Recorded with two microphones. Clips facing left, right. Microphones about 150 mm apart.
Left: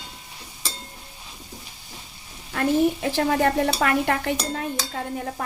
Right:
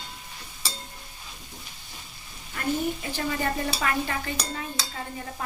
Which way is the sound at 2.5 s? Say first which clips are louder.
Left 7 dB; 70° left (ahead or behind).